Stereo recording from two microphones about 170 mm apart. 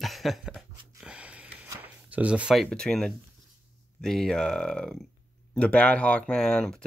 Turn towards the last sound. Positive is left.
turn(degrees=5)  # may be behind; listen again after turning